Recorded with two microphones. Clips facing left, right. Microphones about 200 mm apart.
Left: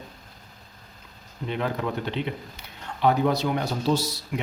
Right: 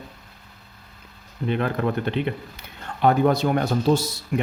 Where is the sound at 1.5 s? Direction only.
55° right (ahead or behind).